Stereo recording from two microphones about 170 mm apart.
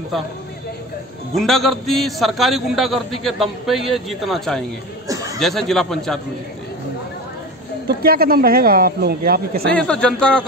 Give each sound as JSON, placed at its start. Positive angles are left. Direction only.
{"t": 1.3, "sound": "a man's voice", "side_deg": 0}
{"t": 5.0, "sound": "chatter", "side_deg": -20}
{"t": 5.4, "sound": "a man's voice", "side_deg": 0}
{"t": 8.0, "sound": "speech", "side_deg": -60}
{"t": 9.7, "sound": "a man's voice", "side_deg": 5}